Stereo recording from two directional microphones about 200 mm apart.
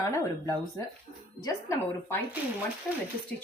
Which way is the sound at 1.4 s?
15° left (ahead or behind).